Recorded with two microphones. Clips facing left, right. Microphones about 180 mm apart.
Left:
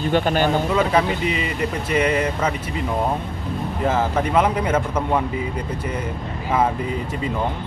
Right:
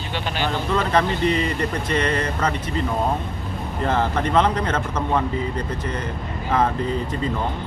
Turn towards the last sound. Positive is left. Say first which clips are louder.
# right 1 dB
turn(degrees=10)  # may be behind; listen again after turning